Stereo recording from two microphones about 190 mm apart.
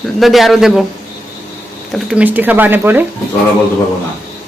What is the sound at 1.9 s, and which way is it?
A woman's voice, 5° right (ahead or behind).